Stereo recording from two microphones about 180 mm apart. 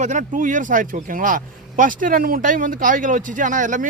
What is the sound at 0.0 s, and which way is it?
Speech, 45° right (ahead or behind).